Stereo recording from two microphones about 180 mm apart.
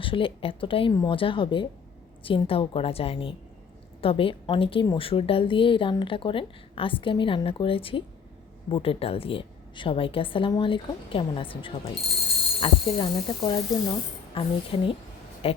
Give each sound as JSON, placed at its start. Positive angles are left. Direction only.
{"t": 0.0, "sound": "a woman's voice", "side_deg": 30}